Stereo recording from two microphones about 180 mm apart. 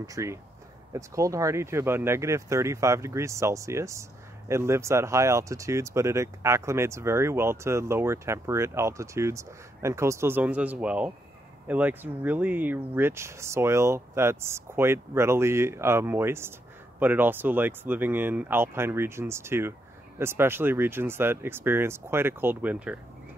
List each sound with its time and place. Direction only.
0.0 s speech: 15° right (ahead or behind)